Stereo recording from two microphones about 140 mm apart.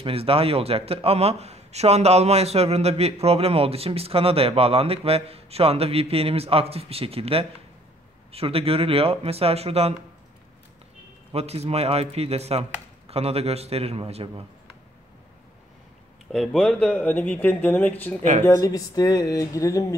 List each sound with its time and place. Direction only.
0.0 s a man's voice: 45° right (ahead or behind)
11.3 s a man's voice: 50° right (ahead or behind)
16.3 s speech: 5° left (ahead or behind); by 20.0 s 25° left (ahead or behind)